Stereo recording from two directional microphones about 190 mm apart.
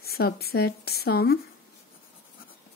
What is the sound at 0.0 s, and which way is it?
Speech, 55° left (ahead or behind).